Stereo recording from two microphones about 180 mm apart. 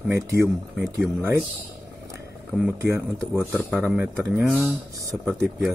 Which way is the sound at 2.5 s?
10° right (ahead or behind).